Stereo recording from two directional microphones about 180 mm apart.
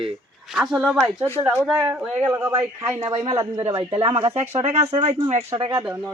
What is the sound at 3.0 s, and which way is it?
Speech, 30° right (ahead or behind).